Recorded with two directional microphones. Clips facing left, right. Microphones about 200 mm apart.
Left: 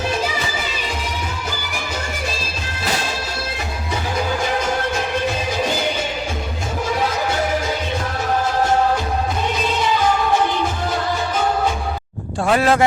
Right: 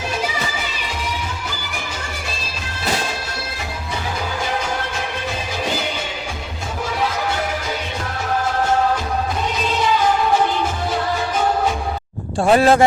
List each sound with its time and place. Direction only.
12.4 s speech: 30° right (ahead or behind)